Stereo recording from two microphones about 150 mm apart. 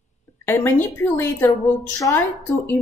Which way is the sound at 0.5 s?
15° left (ahead or behind).